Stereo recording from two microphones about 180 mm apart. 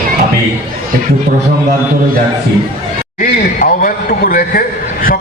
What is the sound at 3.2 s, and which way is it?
A man's voice, 50° left (ahead or behind).